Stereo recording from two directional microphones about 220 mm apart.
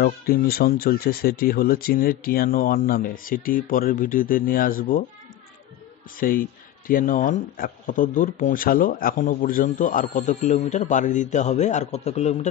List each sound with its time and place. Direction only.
0.0 s speech: 45° left (ahead or behind)
6.1 s speech: 40° left (ahead or behind)